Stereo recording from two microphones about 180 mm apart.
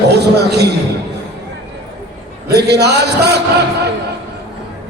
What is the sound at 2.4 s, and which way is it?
Speech, 65° right (ahead or behind).